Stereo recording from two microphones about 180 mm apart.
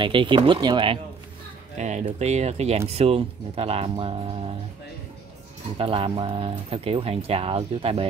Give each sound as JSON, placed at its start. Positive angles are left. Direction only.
{"t": 0.0, "sound": "speech", "side_deg": -25}
{"t": 1.8, "sound": "speech", "side_deg": -40}
{"t": 5.8, "sound": "speech", "side_deg": -30}